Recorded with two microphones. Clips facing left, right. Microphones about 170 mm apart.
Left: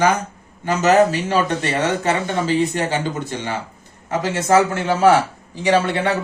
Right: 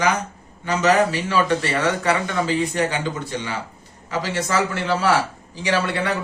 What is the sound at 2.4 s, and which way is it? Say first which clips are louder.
A man's voice: left 2 dB; 45° left (ahead or behind).